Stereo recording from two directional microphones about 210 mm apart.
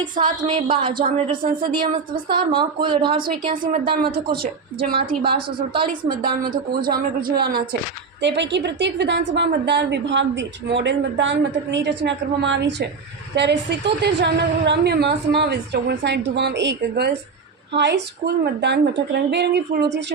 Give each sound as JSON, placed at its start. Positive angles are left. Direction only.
{"t": 0.0, "sound": "a woman's voice", "side_deg": -20}
{"t": 3.5, "sound": "a woman's voice", "side_deg": -40}
{"t": 6.1, "sound": "a woman's voice", "side_deg": -45}